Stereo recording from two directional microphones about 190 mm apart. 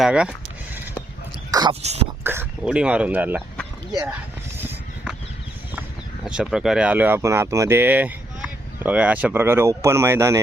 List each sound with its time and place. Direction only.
0.0 s speech: 5° right (ahead or behind)
1.5 s a sound: 20° right (ahead or behind)
2.2 s speech: 10° right (ahead or behind)
4.5 s vehicle: 10° right (ahead or behind)
6.2 s speech: 5° right (ahead or behind)